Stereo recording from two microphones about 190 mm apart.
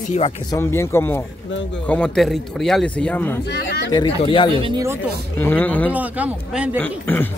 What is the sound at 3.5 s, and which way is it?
Speech, 65° left (ahead or behind).